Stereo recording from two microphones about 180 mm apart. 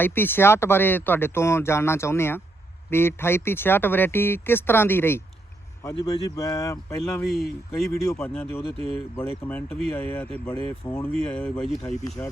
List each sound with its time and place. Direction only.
0.0 s speech: 10° left (ahead or behind)
7.0 s speech: centre (ahead or behind)
7.7 s speech: 15° left (ahead or behind)